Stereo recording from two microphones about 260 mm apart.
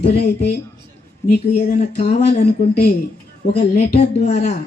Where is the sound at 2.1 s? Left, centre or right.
Left.